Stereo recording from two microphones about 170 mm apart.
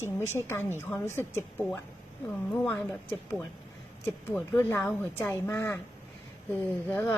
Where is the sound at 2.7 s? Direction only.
5° left (ahead or behind).